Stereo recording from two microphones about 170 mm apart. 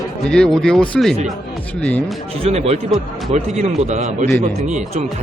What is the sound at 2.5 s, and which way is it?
A man's voice, 40° right (ahead or behind).